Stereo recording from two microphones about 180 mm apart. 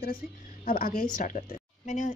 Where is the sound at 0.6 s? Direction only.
55° left (ahead or behind).